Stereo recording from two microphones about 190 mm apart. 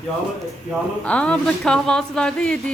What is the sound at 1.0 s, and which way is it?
A woman's voice, 5° left (ahead or behind).